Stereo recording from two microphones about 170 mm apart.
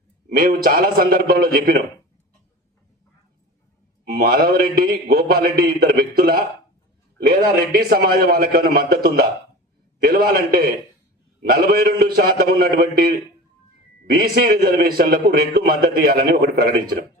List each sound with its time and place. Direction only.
0.3 s a man's voice: 60° right (ahead or behind)
4.1 s a man's voice: 60° right (ahead or behind)